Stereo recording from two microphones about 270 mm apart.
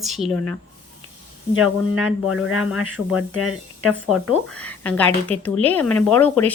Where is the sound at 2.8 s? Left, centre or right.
Left.